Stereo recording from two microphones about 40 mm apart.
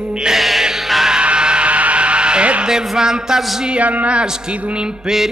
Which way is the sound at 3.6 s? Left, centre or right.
Right.